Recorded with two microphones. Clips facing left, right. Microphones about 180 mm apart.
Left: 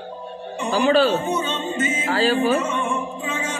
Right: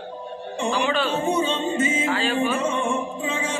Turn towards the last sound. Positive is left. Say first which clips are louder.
# even
turn(degrees=-30)  # may be behind; listen again after turning